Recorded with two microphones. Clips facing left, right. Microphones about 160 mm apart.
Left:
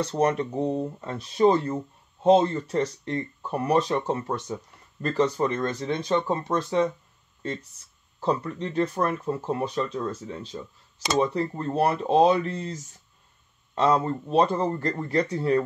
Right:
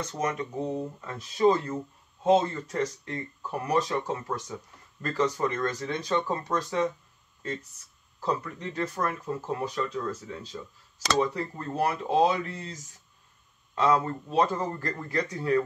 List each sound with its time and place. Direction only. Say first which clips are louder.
0.0 s speech: left 7 dB; 35° left (ahead or behind)
8.2 s speech: left 4 dB; 30° left (ahead or behind)
13.7 s speech: left 2 dB; 25° left (ahead or behind)